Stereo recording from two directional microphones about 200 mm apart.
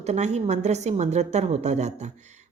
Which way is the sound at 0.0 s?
35° right (ahead or behind).